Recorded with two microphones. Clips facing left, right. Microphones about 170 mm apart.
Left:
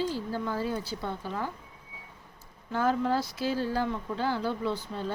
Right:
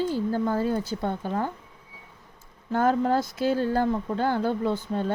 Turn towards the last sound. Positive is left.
turn(degrees=-50)  # may be behind; listen again after turning